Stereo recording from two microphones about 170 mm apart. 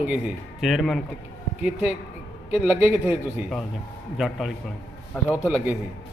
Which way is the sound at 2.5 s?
10° right (ahead or behind).